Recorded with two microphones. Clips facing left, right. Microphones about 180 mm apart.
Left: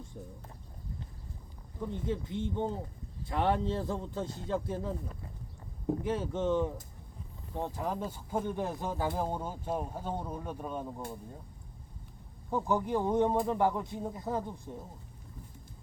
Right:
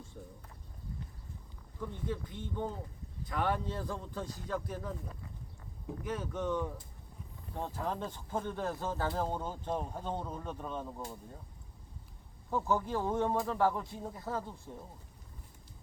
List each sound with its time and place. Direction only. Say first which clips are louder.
0.1 s speech: left 3 dB; 15° left (ahead or behind)
1.8 s speech: left 4 dB; 20° left (ahead or behind)
6.0 s speech: left 1 dB; 25° left (ahead or behind); by 11.0 s 10° left (ahead or behind)
12.5 s speech: left 2 dB; 15° left (ahead or behind)